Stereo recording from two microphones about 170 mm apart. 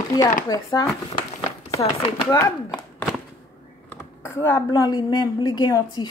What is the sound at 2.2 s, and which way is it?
Speech, 20° left (ahead or behind).